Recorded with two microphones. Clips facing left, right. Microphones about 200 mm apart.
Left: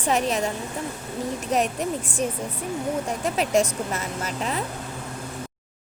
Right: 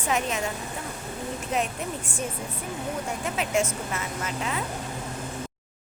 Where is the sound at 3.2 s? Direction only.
35° left (ahead or behind).